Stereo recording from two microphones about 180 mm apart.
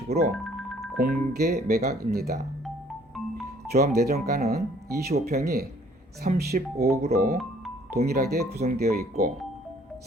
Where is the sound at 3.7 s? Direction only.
60° right (ahead or behind).